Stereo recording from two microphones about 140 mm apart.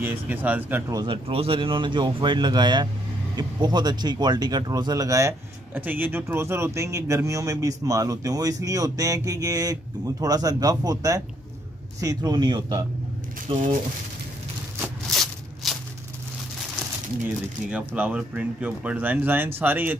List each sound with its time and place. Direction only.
0.0 s speech: 15° right (ahead or behind)
0.9 s speech: 35° right (ahead or behind)
5.8 s speech: 15° right (ahead or behind); by 13.6 s 40° right (ahead or behind)
14.8 s a sound: centre (ahead or behind)
17.6 s speech: 10° right (ahead or behind)